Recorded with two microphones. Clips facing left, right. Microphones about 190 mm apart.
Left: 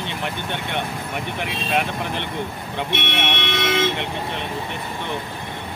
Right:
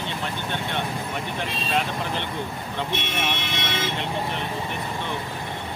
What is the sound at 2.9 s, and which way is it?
Speech, 70° left (ahead or behind).